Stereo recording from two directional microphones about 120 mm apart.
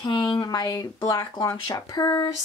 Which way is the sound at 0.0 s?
40° left (ahead or behind).